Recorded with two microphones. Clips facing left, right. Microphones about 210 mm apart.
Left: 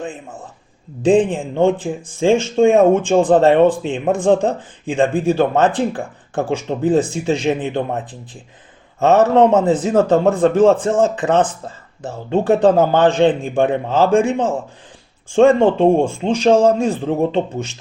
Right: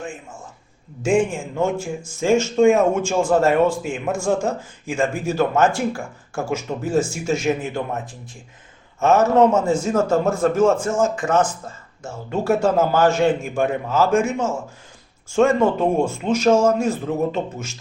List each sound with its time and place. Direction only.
1.0 s speech: 35° left (ahead or behind)